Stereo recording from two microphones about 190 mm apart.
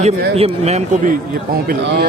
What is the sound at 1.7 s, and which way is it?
Speech, 60° right (ahead or behind).